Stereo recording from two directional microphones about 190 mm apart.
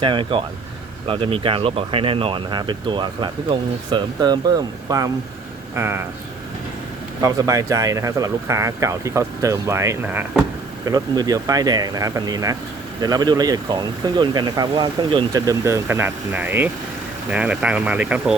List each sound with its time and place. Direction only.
0.0 s speech: 25° right (ahead or behind)
7.2 s speech: 15° right (ahead or behind)
10.8 s speech: 20° right (ahead or behind)